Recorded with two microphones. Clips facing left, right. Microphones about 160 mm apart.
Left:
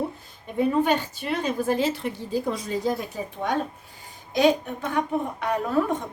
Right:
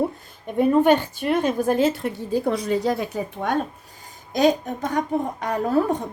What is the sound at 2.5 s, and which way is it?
A woman's voice, 65° right (ahead or behind).